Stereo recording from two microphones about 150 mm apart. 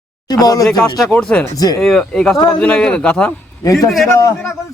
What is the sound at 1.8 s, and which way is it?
Speech, 5° left (ahead or behind).